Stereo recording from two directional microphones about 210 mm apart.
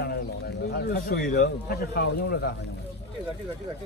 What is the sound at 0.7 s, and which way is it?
Speech, 50° left (ahead or behind).